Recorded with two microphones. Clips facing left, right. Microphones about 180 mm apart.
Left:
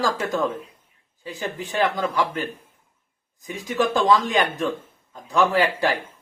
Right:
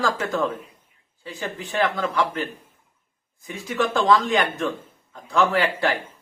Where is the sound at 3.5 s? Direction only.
15° left (ahead or behind).